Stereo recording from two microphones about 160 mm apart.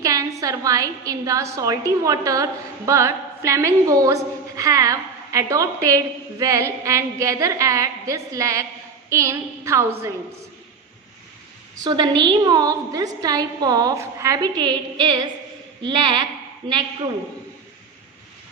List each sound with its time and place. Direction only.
0.0 s a woman's voice: 20° right (ahead or behind)
11.8 s a woman's voice: 25° right (ahead or behind)